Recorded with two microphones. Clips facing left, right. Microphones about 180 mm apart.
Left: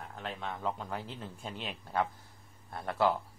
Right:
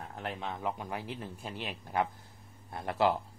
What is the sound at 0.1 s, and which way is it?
Speech, 15° right (ahead or behind).